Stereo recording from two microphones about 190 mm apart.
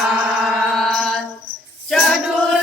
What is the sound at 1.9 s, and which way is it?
Music, centre (ahead or behind).